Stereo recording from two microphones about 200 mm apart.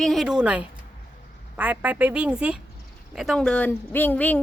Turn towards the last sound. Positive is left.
turn(degrees=10)  # may be behind; listen again after turning